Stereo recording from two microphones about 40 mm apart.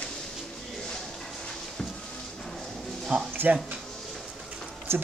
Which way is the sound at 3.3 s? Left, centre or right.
Right.